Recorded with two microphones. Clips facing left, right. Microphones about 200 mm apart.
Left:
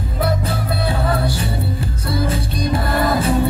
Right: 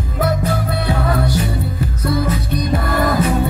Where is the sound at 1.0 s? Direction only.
30° left (ahead or behind).